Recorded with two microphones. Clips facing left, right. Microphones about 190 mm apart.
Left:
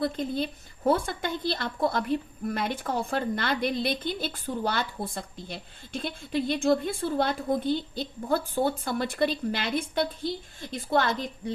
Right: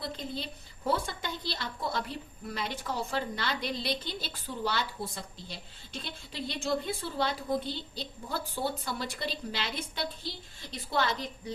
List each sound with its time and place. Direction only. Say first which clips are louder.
0.0 s a woman's voice: left 9 dB; 55° left (ahead or behind)